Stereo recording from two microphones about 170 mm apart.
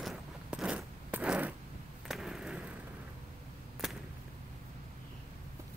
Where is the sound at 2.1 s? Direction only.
5° right (ahead or behind).